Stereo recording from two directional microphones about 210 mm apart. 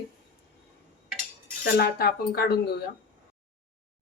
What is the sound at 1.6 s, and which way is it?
Speech, 50° left (ahead or behind).